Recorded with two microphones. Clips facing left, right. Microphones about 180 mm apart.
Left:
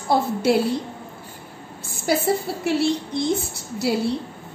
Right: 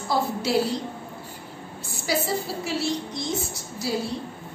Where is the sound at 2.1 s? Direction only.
55° left (ahead or behind).